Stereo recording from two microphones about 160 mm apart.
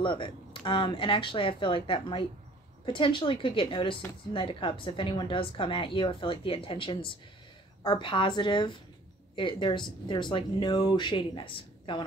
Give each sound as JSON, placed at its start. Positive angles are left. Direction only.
{"t": 0.0, "sound": "a woman's voice", "side_deg": 30}